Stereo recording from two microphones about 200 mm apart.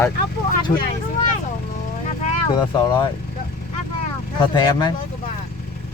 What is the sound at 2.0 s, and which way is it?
Vehicle, 35° left (ahead or behind).